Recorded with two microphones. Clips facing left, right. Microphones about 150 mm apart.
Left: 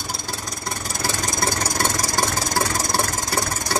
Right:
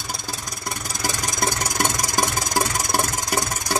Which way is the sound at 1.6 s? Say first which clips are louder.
Left 1 dB; 20° right (ahead or behind).